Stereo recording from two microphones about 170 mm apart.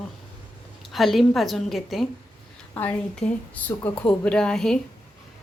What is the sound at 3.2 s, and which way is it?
Speech, 40° left (ahead or behind).